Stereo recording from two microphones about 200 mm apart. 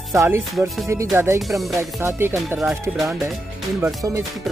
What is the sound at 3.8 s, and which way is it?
Music, 15° right (ahead or behind).